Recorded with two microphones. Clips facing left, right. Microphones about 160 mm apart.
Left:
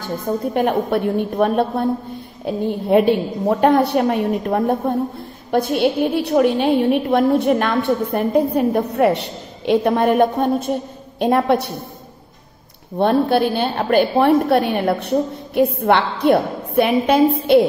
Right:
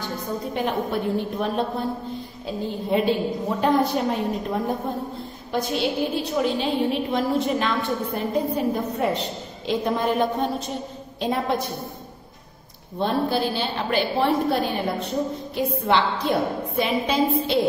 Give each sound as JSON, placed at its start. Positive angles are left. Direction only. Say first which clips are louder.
{"t": 0.6, "sound": "a woman's voice", "louder": "left 6 dB", "side_deg": 60}
{"t": 12.9, "sound": "a woman's voice", "louder": "left 7 dB", "side_deg": 60}